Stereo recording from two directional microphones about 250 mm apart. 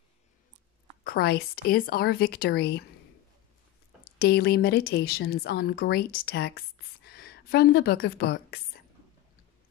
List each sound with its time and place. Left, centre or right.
1.0 s speech: left
4.0 s a woman's voice: left